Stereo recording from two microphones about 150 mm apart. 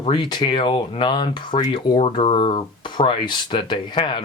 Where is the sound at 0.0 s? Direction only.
35° left (ahead or behind).